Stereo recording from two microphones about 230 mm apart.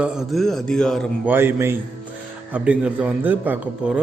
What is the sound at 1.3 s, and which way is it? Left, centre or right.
A man's voice, centre.